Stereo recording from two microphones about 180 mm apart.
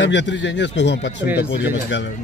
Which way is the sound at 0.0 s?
80° left.